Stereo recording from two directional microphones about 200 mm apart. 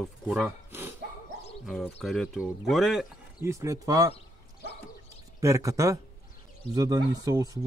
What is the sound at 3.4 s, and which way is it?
Speech, 15° right (ahead or behind).